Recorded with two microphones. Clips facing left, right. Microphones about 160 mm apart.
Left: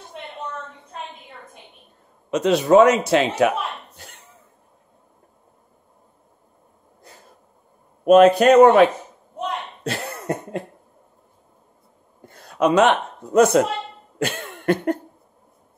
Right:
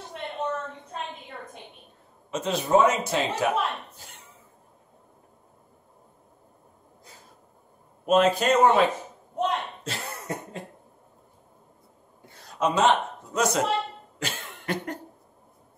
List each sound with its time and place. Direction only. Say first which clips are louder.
2.3 s a man's voice: left 8 dB; 75° left (ahead or behind)
8.0 s speech: left 9 dB; 70° left (ahead or behind)
9.8 s cough: left 7 dB; 60° left (ahead or behind)
12.3 s a man's voice: left 7 dB; 70° left (ahead or behind)
14.1 s cough: left 11 dB; 55° left (ahead or behind)